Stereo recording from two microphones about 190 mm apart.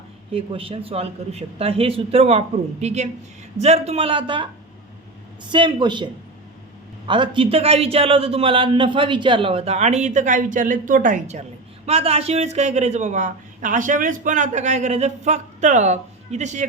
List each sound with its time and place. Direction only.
0.3 s a man's voice: 30° right (ahead or behind)
5.5 s a man's voice: 25° right (ahead or behind)
7.1 s speech: 25° right (ahead or behind)